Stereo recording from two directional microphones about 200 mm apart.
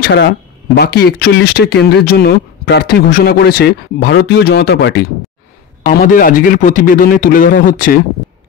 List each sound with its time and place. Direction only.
0.0 s speech: 60° left (ahead or behind)
5.9 s speech: 45° left (ahead or behind)